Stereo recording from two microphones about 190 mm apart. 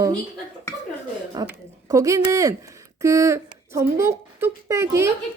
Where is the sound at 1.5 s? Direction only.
15° right (ahead or behind).